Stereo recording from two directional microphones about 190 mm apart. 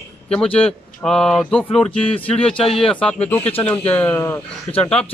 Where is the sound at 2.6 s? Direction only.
30° left (ahead or behind).